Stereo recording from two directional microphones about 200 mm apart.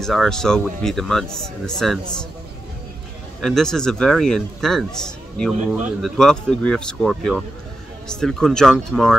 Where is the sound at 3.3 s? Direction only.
Centre (ahead or behind).